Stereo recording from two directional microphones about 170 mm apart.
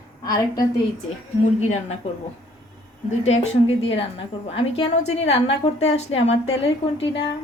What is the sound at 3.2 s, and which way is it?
A woman's voice, 40° left (ahead or behind).